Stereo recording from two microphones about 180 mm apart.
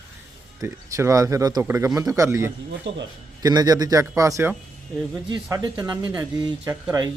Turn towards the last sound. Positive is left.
turn(degrees=-20)  # may be behind; listen again after turning